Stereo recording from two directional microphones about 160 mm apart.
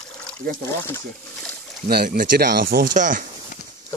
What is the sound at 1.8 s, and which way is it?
Speech, 75° right (ahead or behind).